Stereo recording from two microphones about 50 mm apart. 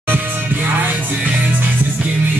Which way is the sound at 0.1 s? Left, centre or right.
Right.